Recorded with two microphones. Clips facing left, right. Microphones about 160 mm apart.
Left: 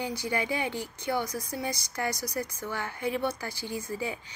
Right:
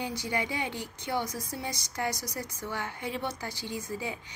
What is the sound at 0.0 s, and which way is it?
A woman's voice, 20° right (ahead or behind).